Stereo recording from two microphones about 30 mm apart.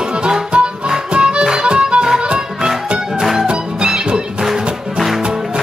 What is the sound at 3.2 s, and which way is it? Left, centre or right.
Music, centre.